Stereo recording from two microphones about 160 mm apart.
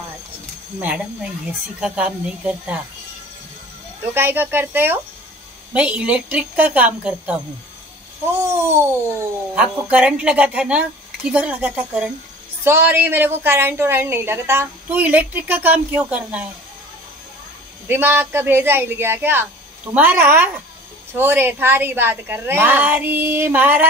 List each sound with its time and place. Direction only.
0.7 s a woman's voice: 5° right (ahead or behind)
4.1 s a woman's voice: 15° right (ahead or behind)
8.5 s a woman's voice: 15° right (ahead or behind)
17.8 s a woman's voice: 15° right (ahead or behind)